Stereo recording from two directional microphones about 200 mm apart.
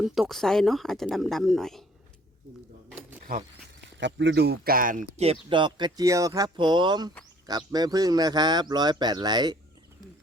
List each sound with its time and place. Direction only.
0.0 s speech: centre (ahead or behind)
4.0 s speech: 65° right (ahead or behind); by 5.0 s 45° right (ahead or behind)
5.1 s a man's voice: 30° right (ahead or behind)